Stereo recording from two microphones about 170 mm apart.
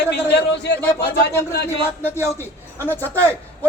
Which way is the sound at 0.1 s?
80° left.